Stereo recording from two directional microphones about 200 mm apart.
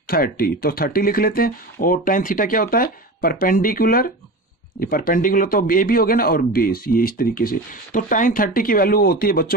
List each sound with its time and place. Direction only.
0.0 s a man's voice: 50° left (ahead or behind)